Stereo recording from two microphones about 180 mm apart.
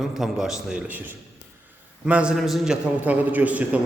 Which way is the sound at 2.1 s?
5° right (ahead or behind).